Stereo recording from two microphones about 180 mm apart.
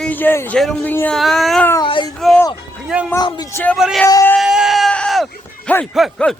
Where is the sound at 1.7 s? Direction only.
25° left (ahead or behind).